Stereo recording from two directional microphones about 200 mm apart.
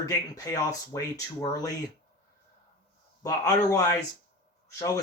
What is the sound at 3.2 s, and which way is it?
Speech, 15° left (ahead or behind).